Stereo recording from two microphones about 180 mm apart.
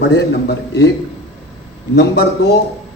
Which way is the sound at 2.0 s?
70° left (ahead or behind).